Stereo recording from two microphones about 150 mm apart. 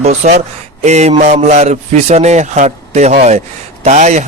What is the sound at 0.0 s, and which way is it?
A man's voice, 45° right (ahead or behind).